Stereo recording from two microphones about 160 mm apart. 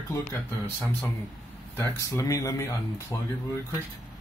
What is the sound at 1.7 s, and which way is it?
Speech, 15° left (ahead or behind).